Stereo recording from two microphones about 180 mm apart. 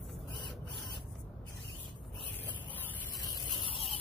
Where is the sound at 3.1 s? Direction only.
20° left (ahead or behind).